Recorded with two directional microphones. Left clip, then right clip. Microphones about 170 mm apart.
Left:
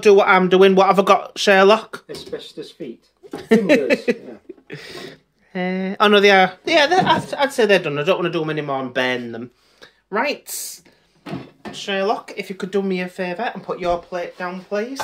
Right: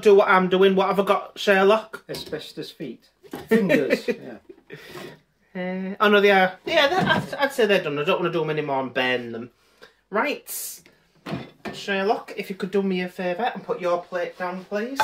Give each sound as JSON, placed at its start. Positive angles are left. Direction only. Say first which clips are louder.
{"t": 0.0, "sound": "a woman's voice", "louder": "left 3 dB", "side_deg": 55}
{"t": 2.0, "sound": "speech", "louder": "left 1 dB", "side_deg": -50}
{"t": 3.4, "sound": "a woman's voice", "louder": "left 5 dB", "side_deg": 60}
{"t": 4.6, "sound": "a sound", "louder": "left 6 dB", "side_deg": 55}
{"t": 5.5, "sound": "a woman's voice", "louder": "left 6 dB", "side_deg": 60}
{"t": 9.8, "sound": "a sound", "louder": "left 3 dB", "side_deg": 60}
{"t": 11.7, "sound": "speech", "louder": "left 3 dB", "side_deg": 35}